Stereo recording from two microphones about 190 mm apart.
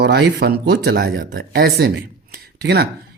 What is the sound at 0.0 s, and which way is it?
Speech, 60° right (ahead or behind).